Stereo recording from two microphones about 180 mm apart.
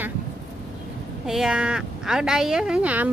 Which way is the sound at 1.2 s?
5° right (ahead or behind).